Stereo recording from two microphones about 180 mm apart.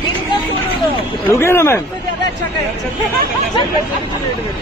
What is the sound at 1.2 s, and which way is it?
Speech, 15° left (ahead or behind).